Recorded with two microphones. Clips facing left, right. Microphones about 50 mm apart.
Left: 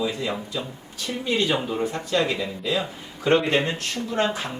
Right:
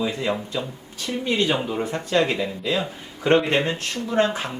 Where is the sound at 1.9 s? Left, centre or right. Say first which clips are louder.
Right 5 dB; right.